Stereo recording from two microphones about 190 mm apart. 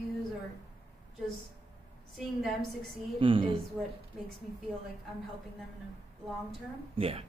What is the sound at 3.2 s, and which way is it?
Speech, 25° right (ahead or behind).